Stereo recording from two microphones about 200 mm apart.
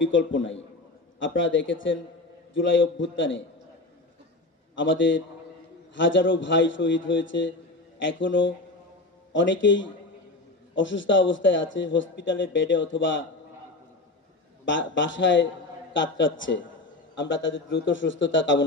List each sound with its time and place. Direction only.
0.0 s a man's voice: 70° left (ahead or behind)
4.7 s a man's voice: 65° left (ahead or behind)
14.6 s a man's voice: 70° left (ahead or behind)